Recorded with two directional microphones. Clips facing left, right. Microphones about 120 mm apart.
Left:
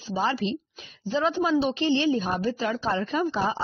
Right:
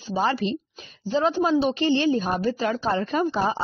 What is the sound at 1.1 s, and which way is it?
A woman's voice, 35° right (ahead or behind).